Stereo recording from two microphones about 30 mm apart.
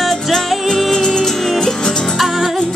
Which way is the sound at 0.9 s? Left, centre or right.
Centre.